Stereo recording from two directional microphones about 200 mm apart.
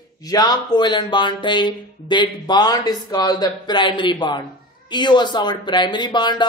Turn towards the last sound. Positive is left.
turn(degrees=20)  # may be behind; listen again after turning